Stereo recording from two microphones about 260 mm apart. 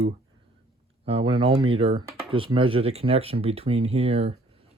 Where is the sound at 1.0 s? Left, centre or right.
Right.